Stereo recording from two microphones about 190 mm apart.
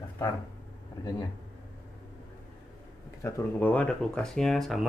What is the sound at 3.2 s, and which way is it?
Speech, 10° left (ahead or behind).